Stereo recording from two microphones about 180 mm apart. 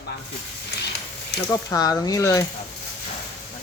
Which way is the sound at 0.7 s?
65° left (ahead or behind).